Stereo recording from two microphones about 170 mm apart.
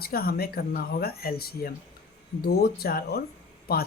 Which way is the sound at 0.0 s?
60° left (ahead or behind).